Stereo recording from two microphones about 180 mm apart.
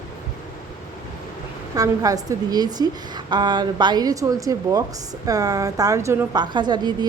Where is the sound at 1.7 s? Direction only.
20° right (ahead or behind).